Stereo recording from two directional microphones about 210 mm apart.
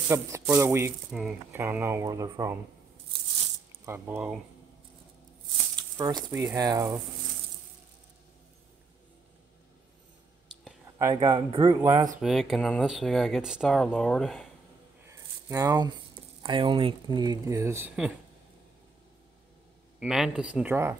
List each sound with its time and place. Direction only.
0.1 s speech: 10° right (ahead or behind)
3.8 s speech: 10° right (ahead or behind)
5.9 s speech: 15° right (ahead or behind)
11.0 s speech: 20° right (ahead or behind)
12.2 s speech: centre (ahead or behind)
15.0 s a sound: 15° right (ahead or behind)
16.4 s speech: 20° right (ahead or behind); by 18.1 s 5° right (ahead or behind)
20.0 s speech: 5° right (ahead or behind)